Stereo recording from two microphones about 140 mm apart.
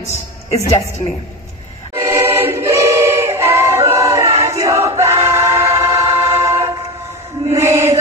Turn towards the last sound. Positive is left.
turn(degrees=-20)  # may be behind; listen again after turning